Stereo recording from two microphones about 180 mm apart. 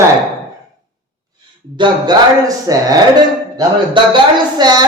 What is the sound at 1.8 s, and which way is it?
A man's voice, 20° right (ahead or behind).